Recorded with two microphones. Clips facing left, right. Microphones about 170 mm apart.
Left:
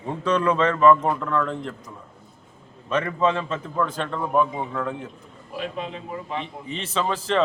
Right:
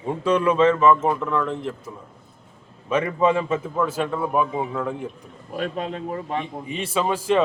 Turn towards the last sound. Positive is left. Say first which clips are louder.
# right 3 dB
turn(degrees=-10)  # may be behind; listen again after turning